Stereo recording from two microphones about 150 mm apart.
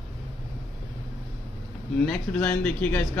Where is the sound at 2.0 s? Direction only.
10° left (ahead or behind).